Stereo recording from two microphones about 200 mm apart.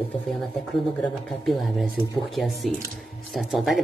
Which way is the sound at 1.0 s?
Centre (ahead or behind).